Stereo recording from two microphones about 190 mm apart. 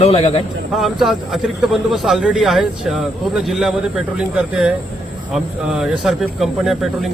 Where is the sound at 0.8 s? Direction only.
Centre (ahead or behind).